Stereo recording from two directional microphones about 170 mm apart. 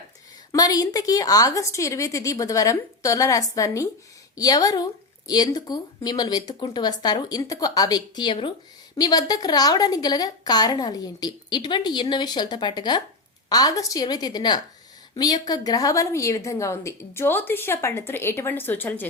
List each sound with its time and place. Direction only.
0.5 s a woman's voice: 20° left (ahead or behind)